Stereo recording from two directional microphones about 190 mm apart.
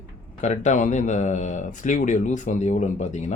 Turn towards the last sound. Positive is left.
turn(degrees=40)  # may be behind; listen again after turning